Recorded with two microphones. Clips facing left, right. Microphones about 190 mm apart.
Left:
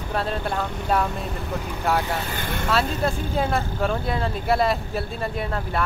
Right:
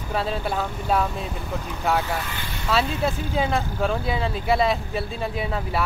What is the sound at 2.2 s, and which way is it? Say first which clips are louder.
Speech: left 5 dB; 50° left (ahead or behind).